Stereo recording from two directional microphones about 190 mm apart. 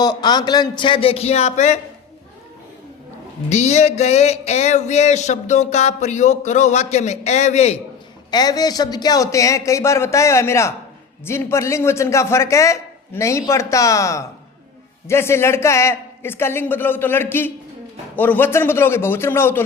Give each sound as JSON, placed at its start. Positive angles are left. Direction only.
{"t": 0.0, "sound": "speech", "side_deg": 20}
{"t": 3.5, "sound": "a sound", "side_deg": 35}
{"t": 8.3, "sound": "a man's voice", "side_deg": 20}